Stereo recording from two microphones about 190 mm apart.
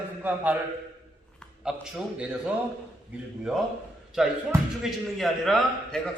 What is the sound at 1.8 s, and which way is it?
Speech, 5° right (ahead or behind).